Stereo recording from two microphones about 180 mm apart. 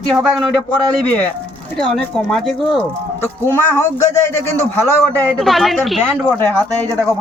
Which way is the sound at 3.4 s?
10° left (ahead or behind).